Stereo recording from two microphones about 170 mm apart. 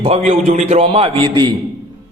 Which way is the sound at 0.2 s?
45° right (ahead or behind).